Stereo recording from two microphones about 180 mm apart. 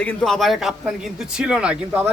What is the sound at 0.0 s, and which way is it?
A man's voice, 5° left (ahead or behind).